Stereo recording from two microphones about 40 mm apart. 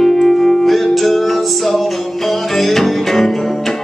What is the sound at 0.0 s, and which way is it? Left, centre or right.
Music, centre.